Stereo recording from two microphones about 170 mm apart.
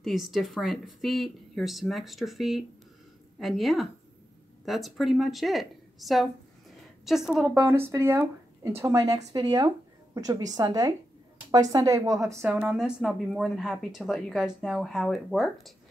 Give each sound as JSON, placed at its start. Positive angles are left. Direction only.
{"t": 0.0, "sound": "a woman's voice", "side_deg": 0}
{"t": 7.5, "sound": "a woman's voice", "side_deg": -15}